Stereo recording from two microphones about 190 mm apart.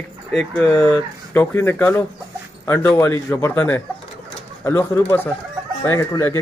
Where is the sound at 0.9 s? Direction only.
10° left (ahead or behind).